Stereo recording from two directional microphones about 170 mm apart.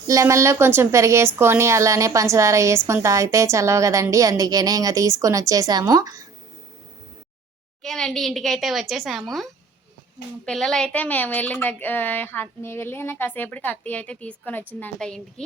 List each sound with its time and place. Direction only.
0.1 s a woman's voice: 20° right (ahead or behind)
7.8 s speech: 5° left (ahead or behind)